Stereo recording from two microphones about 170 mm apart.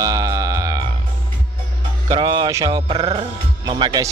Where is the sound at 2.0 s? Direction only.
25° right (ahead or behind).